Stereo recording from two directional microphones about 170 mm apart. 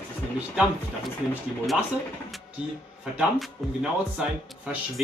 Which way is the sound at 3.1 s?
5° right (ahead or behind).